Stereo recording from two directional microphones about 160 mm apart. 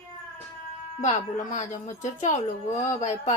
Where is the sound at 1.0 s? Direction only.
50° left (ahead or behind).